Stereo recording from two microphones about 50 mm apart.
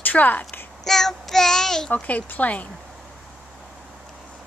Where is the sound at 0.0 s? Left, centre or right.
Left.